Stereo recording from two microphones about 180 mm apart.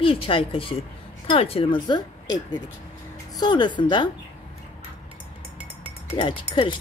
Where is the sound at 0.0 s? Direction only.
30° left (ahead or behind).